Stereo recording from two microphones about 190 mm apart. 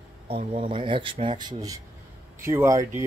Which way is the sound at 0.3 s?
30° right (ahead or behind).